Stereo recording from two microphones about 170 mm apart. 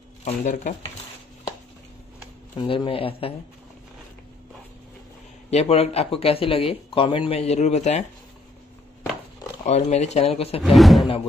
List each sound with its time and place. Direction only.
0.2 s speech: 45° left (ahead or behind)
2.5 s speech: 30° left (ahead or behind)
5.5 s speech: 40° left (ahead or behind)
9.7 s speech: 40° left (ahead or behind)
10.6 s speech: centre (ahead or behind)